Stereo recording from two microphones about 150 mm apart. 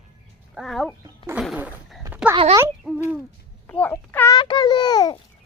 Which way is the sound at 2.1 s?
10° right (ahead or behind).